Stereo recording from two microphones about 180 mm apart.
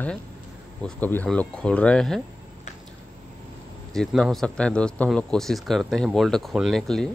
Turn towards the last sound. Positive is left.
turn(degrees=0)  # may be behind; listen again after turning